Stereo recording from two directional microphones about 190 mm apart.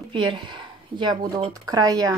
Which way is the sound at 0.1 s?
25° right (ahead or behind).